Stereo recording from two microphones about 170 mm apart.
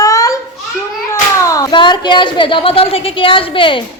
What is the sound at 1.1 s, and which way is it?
A woman's voice, 20° left (ahead or behind).